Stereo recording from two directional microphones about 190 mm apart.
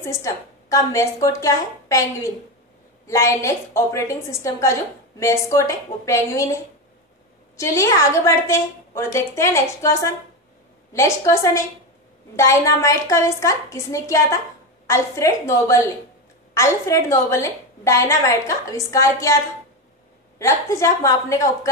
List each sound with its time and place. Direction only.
0.0 s a woman's voice: 15° left (ahead or behind)
3.1 s a woman's voice: 15° left (ahead or behind)